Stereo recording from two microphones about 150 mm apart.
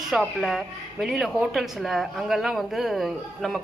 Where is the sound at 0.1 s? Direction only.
Centre (ahead or behind).